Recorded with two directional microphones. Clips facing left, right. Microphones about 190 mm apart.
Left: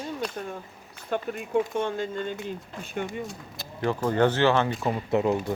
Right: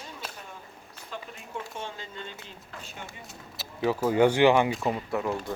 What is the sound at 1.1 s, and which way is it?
Speech, 60° left (ahead or behind).